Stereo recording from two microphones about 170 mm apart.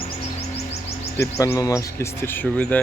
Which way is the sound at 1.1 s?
20° left (ahead or behind).